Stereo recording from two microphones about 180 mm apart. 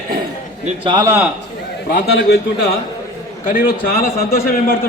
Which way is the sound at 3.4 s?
50° left (ahead or behind).